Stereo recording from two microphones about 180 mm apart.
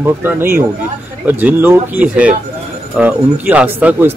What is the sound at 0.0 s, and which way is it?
Speech, 10° right (ahead or behind).